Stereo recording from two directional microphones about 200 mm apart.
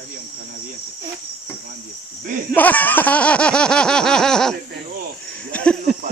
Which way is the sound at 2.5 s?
10° left (ahead or behind).